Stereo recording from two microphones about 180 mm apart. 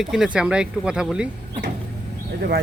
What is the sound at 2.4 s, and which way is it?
Speech, 60° right (ahead or behind).